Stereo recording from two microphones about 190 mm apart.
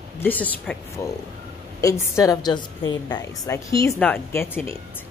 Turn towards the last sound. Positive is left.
turn(degrees=10)  # may be behind; listen again after turning